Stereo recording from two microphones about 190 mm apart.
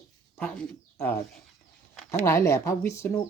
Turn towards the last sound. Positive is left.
turn(degrees=15)  # may be behind; listen again after turning